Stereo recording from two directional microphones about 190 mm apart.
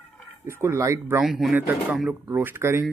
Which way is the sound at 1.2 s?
Centre (ahead or behind).